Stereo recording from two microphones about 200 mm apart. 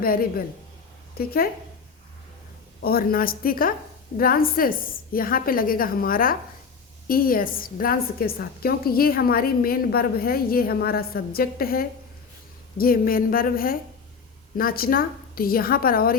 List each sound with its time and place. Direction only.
0.0 s a woman's voice: 45° left (ahead or behind)
2.8 s a woman's voice: 50° left (ahead or behind)